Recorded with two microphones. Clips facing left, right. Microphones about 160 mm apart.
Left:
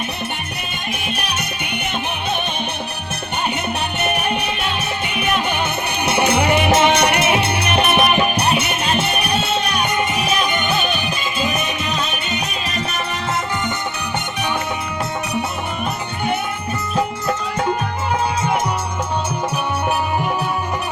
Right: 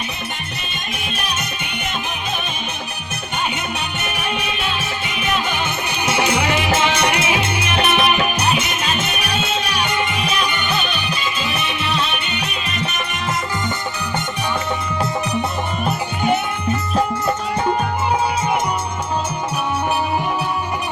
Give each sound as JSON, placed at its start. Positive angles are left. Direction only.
{"t": 1.0, "sound": "music", "side_deg": 65}
{"t": 4.0, "sound": "music", "side_deg": 60}
{"t": 10.0, "sound": "music", "side_deg": 40}